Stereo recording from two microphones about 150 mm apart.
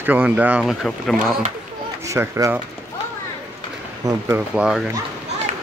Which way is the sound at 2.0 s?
20° right (ahead or behind).